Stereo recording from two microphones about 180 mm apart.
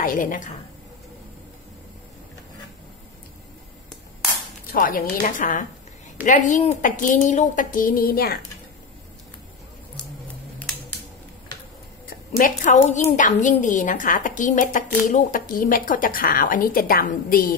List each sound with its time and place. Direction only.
0.0 s a woman's voice: 50° left (ahead or behind)
4.7 s a woman's voice: 50° left (ahead or behind)
12.4 s a woman's voice: 45° left (ahead or behind)